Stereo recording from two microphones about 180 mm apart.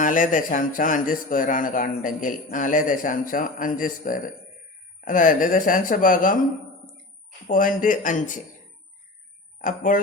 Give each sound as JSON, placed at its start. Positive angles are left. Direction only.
{"t": 0.0, "sound": "speech", "side_deg": 45}
{"t": 7.4, "sound": "speech", "side_deg": 50}
{"t": 9.6, "sound": "speech", "side_deg": 50}